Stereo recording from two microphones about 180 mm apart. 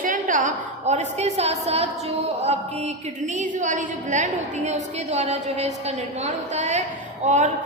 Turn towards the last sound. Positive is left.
turn(degrees=-40)  # may be behind; listen again after turning